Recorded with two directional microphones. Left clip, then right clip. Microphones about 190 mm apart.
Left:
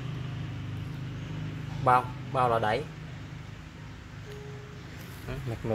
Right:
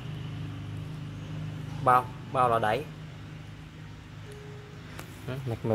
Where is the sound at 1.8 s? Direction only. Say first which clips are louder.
Right 1 dB; 5° right (ahead or behind).